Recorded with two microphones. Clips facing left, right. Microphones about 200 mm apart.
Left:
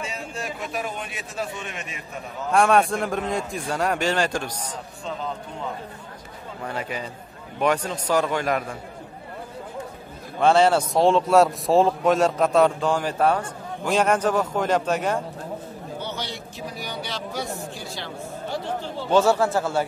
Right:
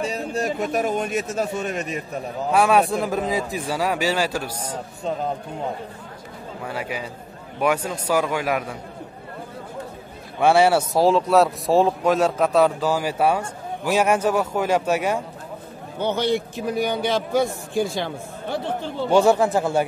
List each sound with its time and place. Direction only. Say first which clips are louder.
0.0 s a man's voice: right 8 dB; 35° right (ahead or behind)
2.5 s a man's voice: right 1 dB; 5° right (ahead or behind)
6.6 s speech: right 1 dB; 10° right (ahead or behind)
10.4 s speech: right 1 dB; 10° right (ahead or behind)
16.0 s a man's voice: right 14 dB; 55° right (ahead or behind)
19.0 s speech: right 2 dB; 15° right (ahead or behind)